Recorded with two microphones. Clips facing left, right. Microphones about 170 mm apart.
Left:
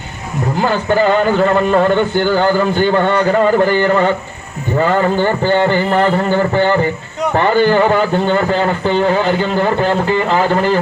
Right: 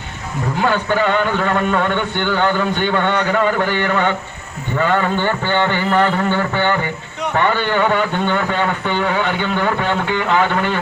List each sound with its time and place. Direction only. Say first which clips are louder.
0.7 s speech: left 5 dB; 35° left (ahead or behind)